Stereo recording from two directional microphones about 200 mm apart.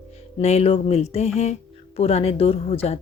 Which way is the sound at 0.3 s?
30° left (ahead or behind).